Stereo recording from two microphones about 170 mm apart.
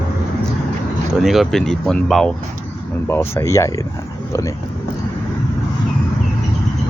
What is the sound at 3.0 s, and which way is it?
Speech, 15° left (ahead or behind).